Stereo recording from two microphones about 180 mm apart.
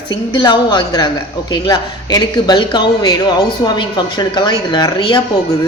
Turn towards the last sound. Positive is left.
turn(degrees=25)  # may be behind; listen again after turning